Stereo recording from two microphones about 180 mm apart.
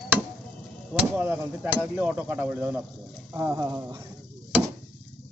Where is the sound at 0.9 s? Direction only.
10° right (ahead or behind).